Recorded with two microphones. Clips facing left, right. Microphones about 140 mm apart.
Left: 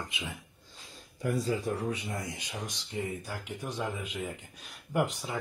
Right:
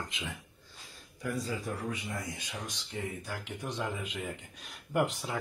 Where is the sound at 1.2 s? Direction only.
30° left (ahead or behind).